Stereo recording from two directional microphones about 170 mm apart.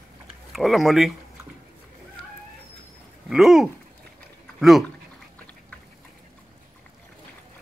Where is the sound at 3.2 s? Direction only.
Centre (ahead or behind).